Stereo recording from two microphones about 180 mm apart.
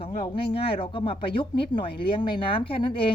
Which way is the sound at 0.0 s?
30° left (ahead or behind).